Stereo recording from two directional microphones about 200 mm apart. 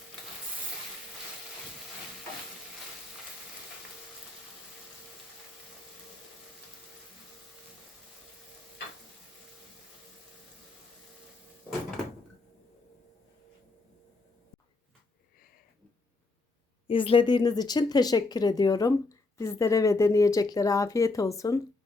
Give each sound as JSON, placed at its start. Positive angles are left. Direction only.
{"t": 16.8, "sound": "speech", "side_deg": 25}